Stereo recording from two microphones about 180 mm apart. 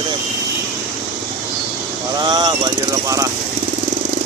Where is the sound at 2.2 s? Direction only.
25° right (ahead or behind).